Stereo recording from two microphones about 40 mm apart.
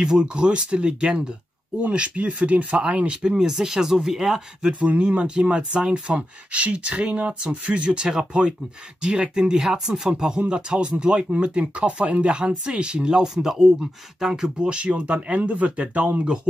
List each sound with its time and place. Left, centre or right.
0.0 s speech: right
4.7 s speech: right; by 14.5 s centre
14.6 s speech: right